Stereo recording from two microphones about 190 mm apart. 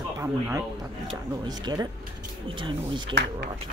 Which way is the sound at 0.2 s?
15° right (ahead or behind).